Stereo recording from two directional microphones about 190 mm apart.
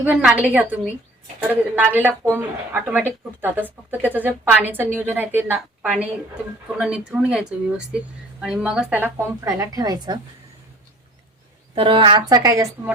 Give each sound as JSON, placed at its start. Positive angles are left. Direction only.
{"t": 0.0, "sound": "speech", "side_deg": -10}
{"t": 11.7, "sound": "a woman's voice", "side_deg": -30}